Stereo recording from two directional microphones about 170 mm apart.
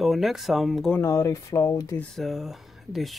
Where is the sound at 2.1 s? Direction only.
Centre (ahead or behind).